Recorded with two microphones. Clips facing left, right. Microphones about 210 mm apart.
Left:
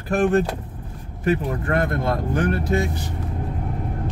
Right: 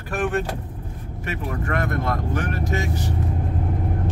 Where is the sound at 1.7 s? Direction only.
30° left (ahead or behind).